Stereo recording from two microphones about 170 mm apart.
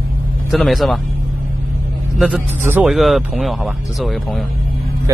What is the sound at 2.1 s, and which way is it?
A man's voice, 5° right (ahead or behind).